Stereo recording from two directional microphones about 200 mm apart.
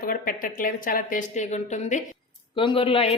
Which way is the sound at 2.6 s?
25° left (ahead or behind).